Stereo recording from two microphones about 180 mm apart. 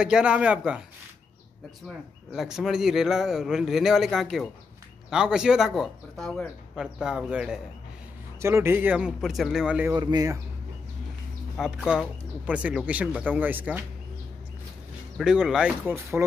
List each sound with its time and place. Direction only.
0.0 s a man's voice: 5° right (ahead or behind)
2.3 s a man's voice: 5° right (ahead or behind)
9.9 s speech: 20° right (ahead or behind)
11.5 s speech: 5° right (ahead or behind)
15.1 s a man's voice: centre (ahead or behind)